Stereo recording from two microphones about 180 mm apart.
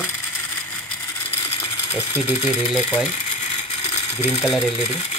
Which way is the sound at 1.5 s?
15° left (ahead or behind).